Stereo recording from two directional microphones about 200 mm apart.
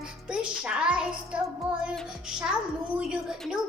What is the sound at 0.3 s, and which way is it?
Music, 5° right (ahead or behind).